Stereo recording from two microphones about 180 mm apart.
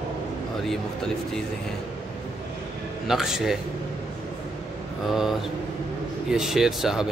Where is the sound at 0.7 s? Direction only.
5° left (ahead or behind).